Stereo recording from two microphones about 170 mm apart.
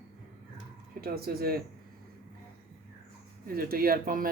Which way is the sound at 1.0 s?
65° right (ahead or behind).